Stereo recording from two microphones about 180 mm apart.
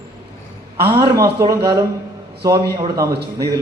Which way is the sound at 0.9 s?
20° right (ahead or behind).